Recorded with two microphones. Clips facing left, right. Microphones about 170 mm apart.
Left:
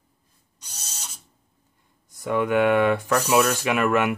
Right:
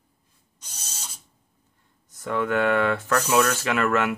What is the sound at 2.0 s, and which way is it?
Speech, 15° left (ahead or behind).